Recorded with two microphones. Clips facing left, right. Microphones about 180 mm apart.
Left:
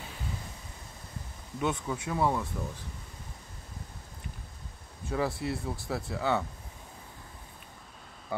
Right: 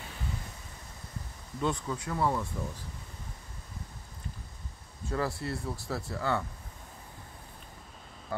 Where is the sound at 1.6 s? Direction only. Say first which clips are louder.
Even; 15° left (ahead or behind).